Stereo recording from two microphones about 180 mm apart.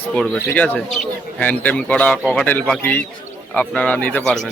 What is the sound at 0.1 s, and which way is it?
A man's voice, 5° left (ahead or behind).